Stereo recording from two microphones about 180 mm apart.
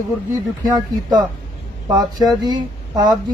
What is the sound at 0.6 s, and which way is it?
Speech, 20° right (ahead or behind).